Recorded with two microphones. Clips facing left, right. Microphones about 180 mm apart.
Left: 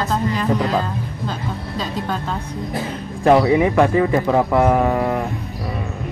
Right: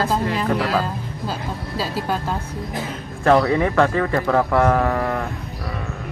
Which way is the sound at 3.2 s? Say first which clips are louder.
Left 3 dB; 15° left (ahead or behind).